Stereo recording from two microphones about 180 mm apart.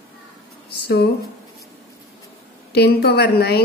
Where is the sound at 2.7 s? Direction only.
65° left (ahead or behind).